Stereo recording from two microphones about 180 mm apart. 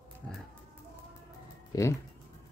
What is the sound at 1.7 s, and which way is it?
Speech, 20° left (ahead or behind).